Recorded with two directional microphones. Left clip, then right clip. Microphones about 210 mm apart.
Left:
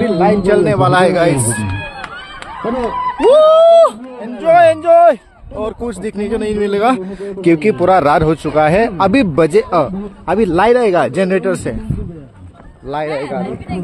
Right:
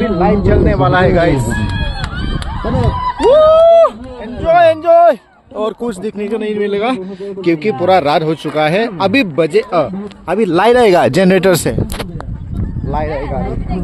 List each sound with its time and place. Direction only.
0.2 s speech: 10° left (ahead or behind)
1.3 s speech: 60° right (ahead or behind)
3.3 s a sound: 5° left (ahead or behind)
4.4 s speech: 15° left (ahead or behind)
5.6 s speech: 15° right (ahead or behind)
6.1 s speech: 5° left (ahead or behind)
9.3 s speech: 30° left (ahead or behind)
9.8 s speech: 15° left (ahead or behind)
10.5 s speech: 5° right (ahead or behind)
10.9 s speech: 35° right (ahead or behind)
13.1 s speech: 10° left (ahead or behind)